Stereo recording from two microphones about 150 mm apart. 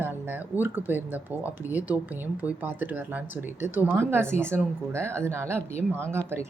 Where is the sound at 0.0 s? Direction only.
15° right (ahead or behind).